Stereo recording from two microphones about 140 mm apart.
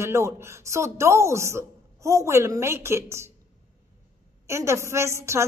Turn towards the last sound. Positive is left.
turn(degrees=-20)  # may be behind; listen again after turning